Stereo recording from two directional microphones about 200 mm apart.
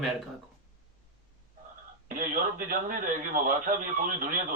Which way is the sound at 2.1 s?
45° right (ahead or behind).